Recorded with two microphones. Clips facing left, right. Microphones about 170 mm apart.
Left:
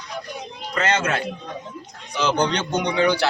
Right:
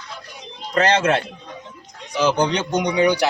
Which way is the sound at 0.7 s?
35° right (ahead or behind).